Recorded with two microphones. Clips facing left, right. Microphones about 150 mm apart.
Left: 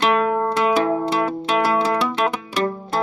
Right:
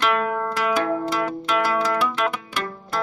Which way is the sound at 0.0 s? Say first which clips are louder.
Left 4 dB; 30° left (ahead or behind).